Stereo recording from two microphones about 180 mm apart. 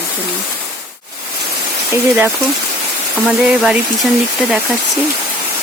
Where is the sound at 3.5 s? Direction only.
Centre (ahead or behind).